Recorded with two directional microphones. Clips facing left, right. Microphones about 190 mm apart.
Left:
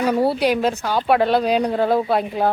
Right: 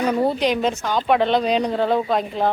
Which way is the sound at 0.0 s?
10° left (ahead or behind).